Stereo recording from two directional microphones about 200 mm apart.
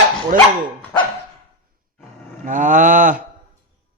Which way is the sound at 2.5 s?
40° right (ahead or behind).